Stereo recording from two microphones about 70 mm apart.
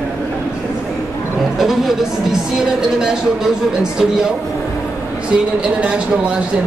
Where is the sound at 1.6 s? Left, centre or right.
Centre.